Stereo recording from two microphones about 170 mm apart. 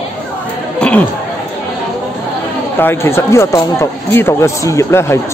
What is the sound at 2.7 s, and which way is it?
Speech, 15° left (ahead or behind).